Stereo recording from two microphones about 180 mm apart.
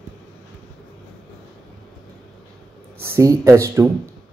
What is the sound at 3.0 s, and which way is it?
Speech, 15° right (ahead or behind).